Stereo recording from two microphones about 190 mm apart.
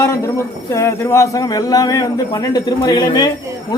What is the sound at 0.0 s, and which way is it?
A man's voice, 15° left (ahead or behind).